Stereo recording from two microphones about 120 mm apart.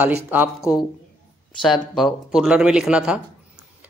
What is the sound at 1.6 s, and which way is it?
Speech, centre (ahead or behind).